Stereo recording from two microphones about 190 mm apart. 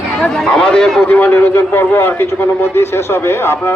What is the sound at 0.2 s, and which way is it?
A man's voice, 5° left (ahead or behind).